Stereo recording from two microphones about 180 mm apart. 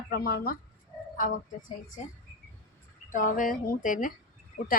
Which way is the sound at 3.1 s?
45° left (ahead or behind).